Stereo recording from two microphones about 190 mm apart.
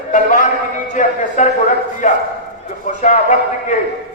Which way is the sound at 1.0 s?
40° left (ahead or behind).